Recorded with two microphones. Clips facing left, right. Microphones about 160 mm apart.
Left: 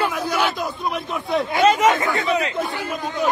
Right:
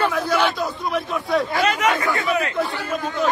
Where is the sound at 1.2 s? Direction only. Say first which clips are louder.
Left 5 dB; 20° left (ahead or behind).